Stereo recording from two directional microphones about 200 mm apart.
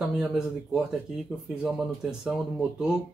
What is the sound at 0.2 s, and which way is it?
Speech, 5° right (ahead or behind).